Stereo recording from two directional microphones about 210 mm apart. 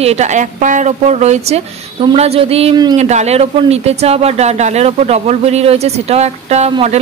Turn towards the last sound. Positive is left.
turn(degrees=-30)  # may be behind; listen again after turning